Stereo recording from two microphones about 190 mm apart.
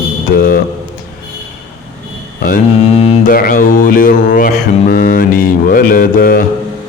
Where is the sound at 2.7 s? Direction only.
30° left (ahead or behind).